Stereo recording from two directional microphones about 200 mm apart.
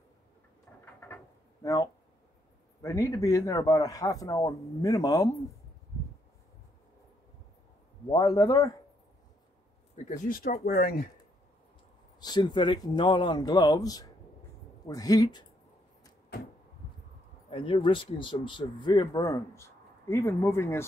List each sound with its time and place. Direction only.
1.0 s drawer open or close: 15° left (ahead or behind)
2.8 s a man's voice: 15° left (ahead or behind)
8.1 s speech: 20° left (ahead or behind)
10.0 s speech: 40° left (ahead or behind)
12.2 s a man's voice: 20° left (ahead or behind)
17.5 s speech: 25° left (ahead or behind)